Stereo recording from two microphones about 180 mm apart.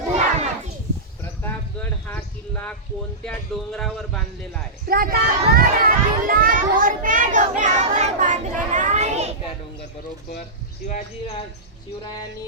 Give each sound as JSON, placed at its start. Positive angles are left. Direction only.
{"t": 0.1, "sound": "children playing", "side_deg": -35}
{"t": 1.4, "sound": "a sound", "side_deg": 10}
{"t": 3.2, "sound": "speech", "side_deg": 5}
{"t": 4.9, "sound": "a child's voice", "side_deg": -55}
{"t": 10.8, "sound": "speech", "side_deg": 40}